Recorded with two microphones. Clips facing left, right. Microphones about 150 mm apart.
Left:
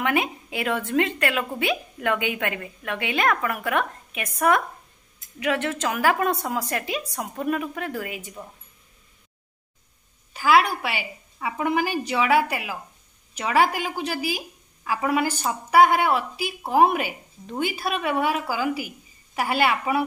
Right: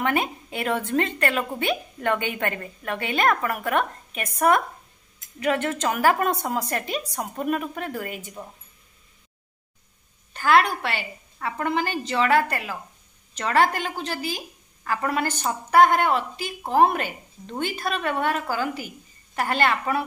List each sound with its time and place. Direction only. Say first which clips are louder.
0.0 s a woman's voice: even; 5° left (ahead or behind)
5.8 s a woman's voice: right 1 dB; centre (ahead or behind)
10.3 s a woman's voice: even; 5° left (ahead or behind)